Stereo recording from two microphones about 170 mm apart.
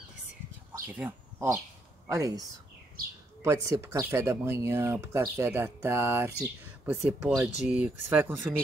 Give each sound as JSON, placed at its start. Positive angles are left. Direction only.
{"t": 0.7, "sound": "speech", "side_deg": -10}
{"t": 3.4, "sound": "speech", "side_deg": -20}